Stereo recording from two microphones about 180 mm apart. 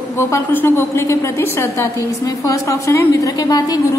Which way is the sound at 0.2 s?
10° left (ahead or behind).